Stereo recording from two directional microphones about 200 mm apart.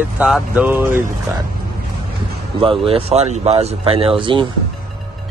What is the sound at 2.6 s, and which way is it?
Speech, 25° right (ahead or behind).